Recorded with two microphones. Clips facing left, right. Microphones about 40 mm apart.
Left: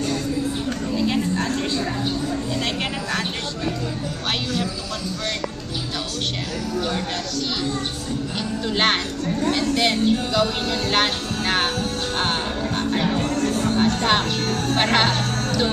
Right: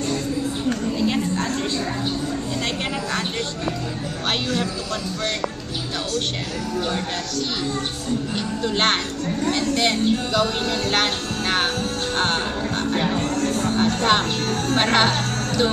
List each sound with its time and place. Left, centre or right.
8.7 s speech: centre
13.2 s music: centre
13.7 s speech: centre